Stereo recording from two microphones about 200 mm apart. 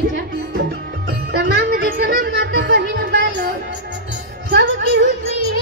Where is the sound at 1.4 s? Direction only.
55° right (ahead or behind).